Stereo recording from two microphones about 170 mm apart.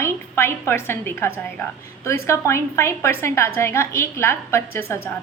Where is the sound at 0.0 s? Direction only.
15° left (ahead or behind).